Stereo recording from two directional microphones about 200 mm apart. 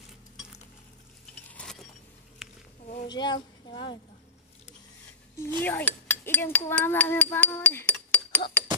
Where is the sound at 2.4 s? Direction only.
Centre (ahead or behind).